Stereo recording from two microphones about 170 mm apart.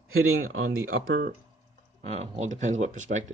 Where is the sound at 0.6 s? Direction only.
65° right (ahead or behind).